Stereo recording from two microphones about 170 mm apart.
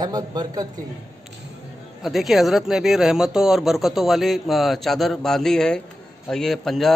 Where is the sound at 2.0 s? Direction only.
Centre (ahead or behind).